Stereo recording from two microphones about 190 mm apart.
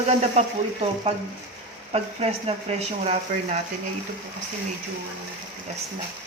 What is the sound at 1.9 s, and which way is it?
Speech, 30° right (ahead or behind).